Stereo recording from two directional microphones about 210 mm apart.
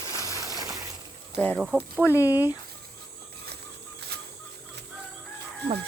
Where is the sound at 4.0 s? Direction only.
50° right (ahead or behind).